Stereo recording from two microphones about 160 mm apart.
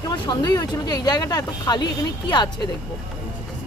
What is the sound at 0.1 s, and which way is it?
Speech, 25° left (ahead or behind).